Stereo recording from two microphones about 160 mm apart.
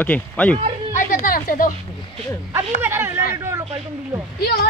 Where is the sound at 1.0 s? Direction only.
60° left (ahead or behind).